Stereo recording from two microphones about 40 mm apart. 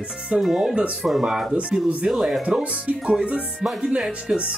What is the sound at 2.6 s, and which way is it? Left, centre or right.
Speech, right.